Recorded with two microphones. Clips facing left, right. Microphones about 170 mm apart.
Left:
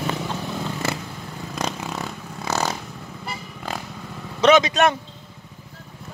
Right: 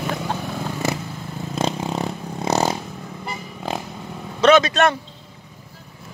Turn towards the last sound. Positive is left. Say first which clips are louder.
# right 1 dB
turn(degrees=15)  # may be behind; listen again after turning